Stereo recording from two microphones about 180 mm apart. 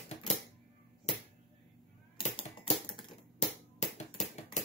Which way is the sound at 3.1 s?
35° left (ahead or behind).